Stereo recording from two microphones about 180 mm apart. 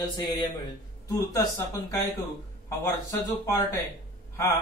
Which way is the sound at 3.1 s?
15° left (ahead or behind).